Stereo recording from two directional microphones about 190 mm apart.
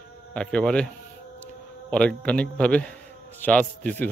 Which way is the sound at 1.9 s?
5° left (ahead or behind).